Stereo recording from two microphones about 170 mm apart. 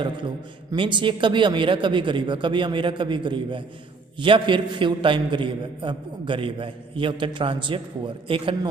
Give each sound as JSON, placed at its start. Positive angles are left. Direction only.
{"t": 0.7, "sound": "a man's voice", "side_deg": -30}